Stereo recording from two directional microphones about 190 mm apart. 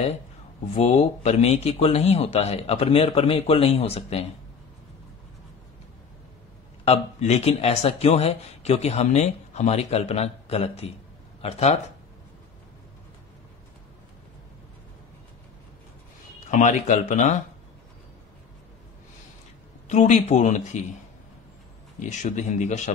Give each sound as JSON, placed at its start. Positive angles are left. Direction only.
{"t": 0.7, "sound": "speech", "side_deg": 35}
{"t": 6.8, "sound": "speech", "side_deg": 35}
{"t": 16.4, "sound": "speech", "side_deg": 40}
{"t": 19.9, "sound": "speech", "side_deg": 40}
{"t": 22.0, "sound": "speech", "side_deg": 40}